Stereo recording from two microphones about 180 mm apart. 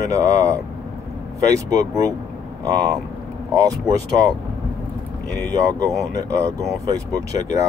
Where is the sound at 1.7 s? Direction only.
20° right (ahead or behind).